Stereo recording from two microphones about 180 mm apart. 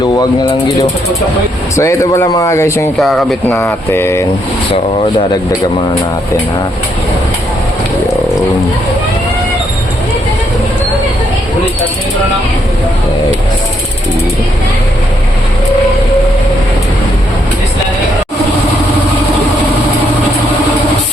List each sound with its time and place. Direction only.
1.7 s speech: 15° left (ahead or behind)
3.0 s speech: centre (ahead or behind)
3.5 s speech: 15° left (ahead or behind)